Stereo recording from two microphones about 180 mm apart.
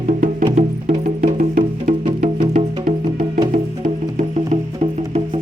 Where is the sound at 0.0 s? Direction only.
45° right (ahead or behind).